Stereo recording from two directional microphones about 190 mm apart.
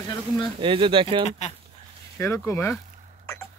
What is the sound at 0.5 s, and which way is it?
Speech, 25° right (ahead or behind).